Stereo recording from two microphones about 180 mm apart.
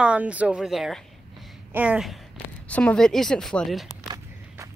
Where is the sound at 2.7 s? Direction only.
5° left (ahead or behind).